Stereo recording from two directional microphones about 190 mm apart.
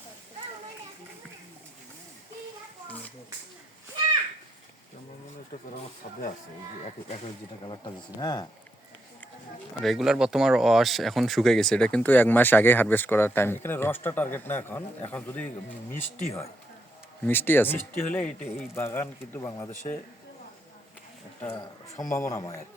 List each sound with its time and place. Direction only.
8.2 s speech: 20° left (ahead or behind)
9.8 s speech: centre (ahead or behind); by 19.7 s 15° left (ahead or behind)
22.2 s speech: 15° left (ahead or behind)